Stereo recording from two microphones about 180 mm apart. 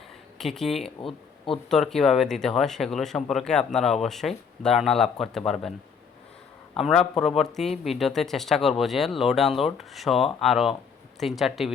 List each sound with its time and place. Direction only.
0.3 s speech: centre (ahead or behind)
0.9 s speech: 30° left (ahead or behind)
1.7 s speech: centre (ahead or behind)
6.7 s speech: centre (ahead or behind)